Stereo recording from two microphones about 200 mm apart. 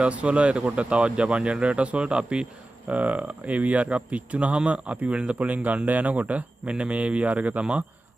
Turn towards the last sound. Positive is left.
turn(degrees=-5)  # may be behind; listen again after turning